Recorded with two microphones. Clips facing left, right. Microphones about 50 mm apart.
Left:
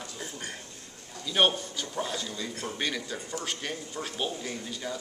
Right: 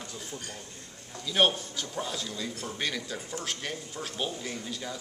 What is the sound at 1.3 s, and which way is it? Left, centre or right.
A man's voice, centre.